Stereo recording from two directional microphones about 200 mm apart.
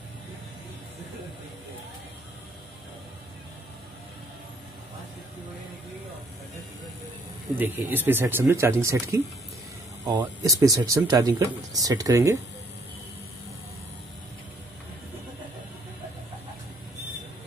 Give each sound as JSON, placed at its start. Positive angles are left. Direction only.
{"t": 7.4, "sound": "speech", "side_deg": -10}